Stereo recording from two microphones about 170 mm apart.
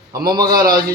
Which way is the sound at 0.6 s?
60° right (ahead or behind).